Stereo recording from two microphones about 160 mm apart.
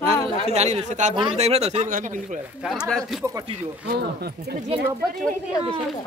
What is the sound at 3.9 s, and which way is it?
Speech, 80° right.